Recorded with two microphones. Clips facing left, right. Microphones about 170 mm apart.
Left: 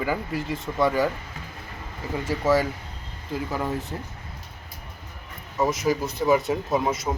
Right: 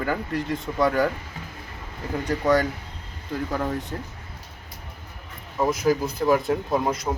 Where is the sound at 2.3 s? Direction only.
5° left (ahead or behind).